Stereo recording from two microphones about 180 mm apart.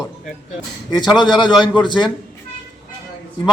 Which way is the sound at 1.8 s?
25° left (ahead or behind).